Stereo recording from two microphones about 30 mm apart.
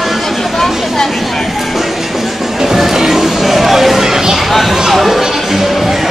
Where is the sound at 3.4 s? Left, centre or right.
Centre.